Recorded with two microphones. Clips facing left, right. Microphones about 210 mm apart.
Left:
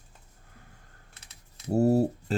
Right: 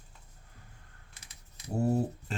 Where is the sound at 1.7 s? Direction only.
40° left (ahead or behind).